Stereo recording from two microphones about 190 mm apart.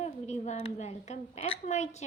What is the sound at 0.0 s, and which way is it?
A woman's voice, 35° left (ahead or behind).